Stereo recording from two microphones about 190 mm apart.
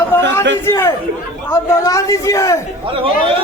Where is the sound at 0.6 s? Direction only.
15° left (ahead or behind).